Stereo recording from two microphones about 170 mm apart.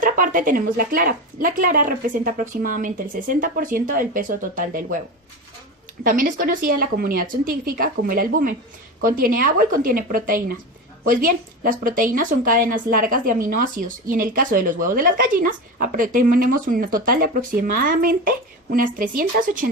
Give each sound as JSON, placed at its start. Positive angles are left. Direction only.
{"t": 0.0, "sound": "speech", "side_deg": -50}
{"t": 6.0, "sound": "speech", "side_deg": -55}